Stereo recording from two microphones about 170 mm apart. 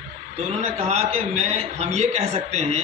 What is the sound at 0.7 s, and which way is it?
A man's voice, 40° right (ahead or behind).